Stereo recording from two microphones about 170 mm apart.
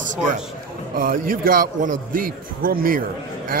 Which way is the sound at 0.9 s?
55° right (ahead or behind).